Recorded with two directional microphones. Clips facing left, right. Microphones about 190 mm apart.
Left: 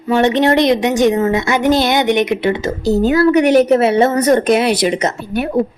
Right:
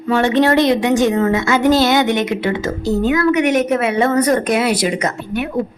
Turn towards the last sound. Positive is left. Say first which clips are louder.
# left 2 dB
turn(degrees=20)  # may be behind; listen again after turning